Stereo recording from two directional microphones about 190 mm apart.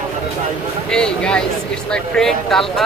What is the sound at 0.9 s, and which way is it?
Speech, 5° left (ahead or behind).